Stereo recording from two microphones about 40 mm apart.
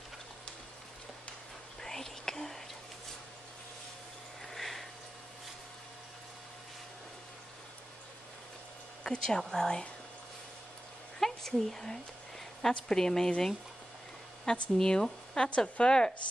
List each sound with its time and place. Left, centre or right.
1.8 s whispering: centre
4.5 s sniff: centre
9.0 s a woman's voice: centre
11.1 s a woman's voice: centre
14.4 s a woman's voice: centre